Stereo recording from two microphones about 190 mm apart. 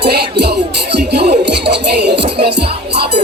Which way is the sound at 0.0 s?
60° right (ahead or behind).